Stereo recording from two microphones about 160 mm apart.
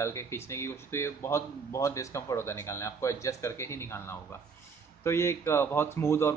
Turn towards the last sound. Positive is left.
turn(degrees=15)  # may be behind; listen again after turning